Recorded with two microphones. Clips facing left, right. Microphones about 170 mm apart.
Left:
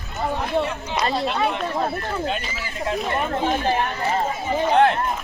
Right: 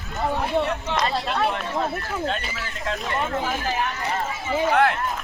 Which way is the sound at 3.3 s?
25° left (ahead or behind).